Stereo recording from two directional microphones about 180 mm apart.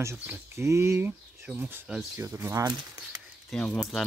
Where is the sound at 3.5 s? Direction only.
5° left (ahead or behind).